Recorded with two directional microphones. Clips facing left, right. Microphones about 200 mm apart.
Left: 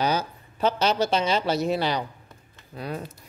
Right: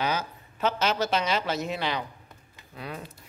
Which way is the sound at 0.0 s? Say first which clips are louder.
Left 4 dB; 35° left (ahead or behind).